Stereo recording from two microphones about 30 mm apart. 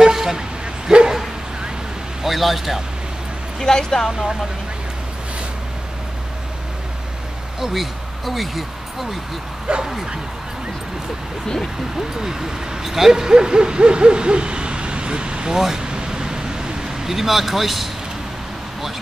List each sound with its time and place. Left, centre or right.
0.0 s vehicle: centre
0.9 s bow-wow: centre
2.2 s speech: centre
3.5 s speech: centre
7.6 s speech: centre
9.7 s speech: right
11.4 s speech: centre
12.2 s speech: centre
15.8 s a sound: right
17.1 s speech: centre